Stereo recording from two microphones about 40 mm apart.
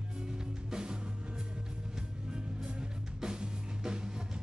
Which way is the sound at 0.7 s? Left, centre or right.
Right.